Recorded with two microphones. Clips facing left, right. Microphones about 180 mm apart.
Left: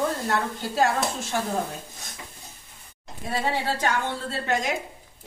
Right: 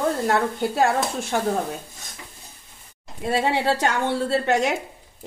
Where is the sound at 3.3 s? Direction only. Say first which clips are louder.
Right 5 dB; 75° right (ahead or behind).